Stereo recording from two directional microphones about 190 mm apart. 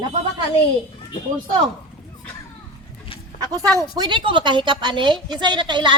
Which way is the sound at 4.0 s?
25° right (ahead or behind).